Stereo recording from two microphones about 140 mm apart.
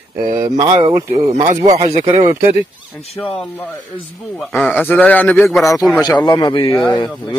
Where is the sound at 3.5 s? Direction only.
10° left (ahead or behind).